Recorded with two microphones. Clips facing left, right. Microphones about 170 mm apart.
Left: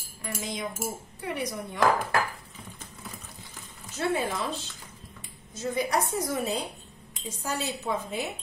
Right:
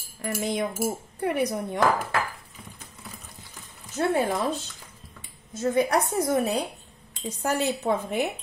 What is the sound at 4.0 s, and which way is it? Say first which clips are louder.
Speech: right 4 dB; 50° right (ahead or behind).